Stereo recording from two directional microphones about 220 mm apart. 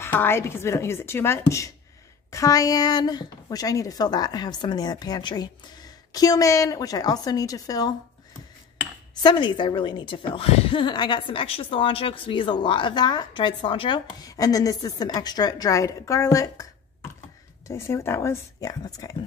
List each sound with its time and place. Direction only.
0.0 s a woman's voice: 10° left (ahead or behind)
9.2 s a woman's voice: 20° left (ahead or behind)
17.6 s a woman's voice: 10° left (ahead or behind)